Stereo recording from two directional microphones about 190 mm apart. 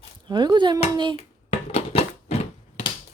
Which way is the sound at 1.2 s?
30° left (ahead or behind).